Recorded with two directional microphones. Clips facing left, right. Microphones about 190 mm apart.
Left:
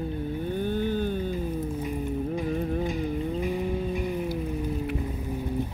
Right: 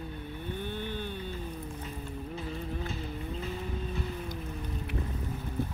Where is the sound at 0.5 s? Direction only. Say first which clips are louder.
Left 9 dB; 40° left (ahead or behind).